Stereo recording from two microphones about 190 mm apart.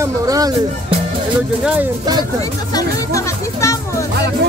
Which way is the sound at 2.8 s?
15° left (ahead or behind).